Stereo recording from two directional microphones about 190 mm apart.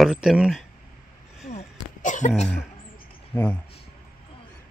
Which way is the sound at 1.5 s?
40° left (ahead or behind).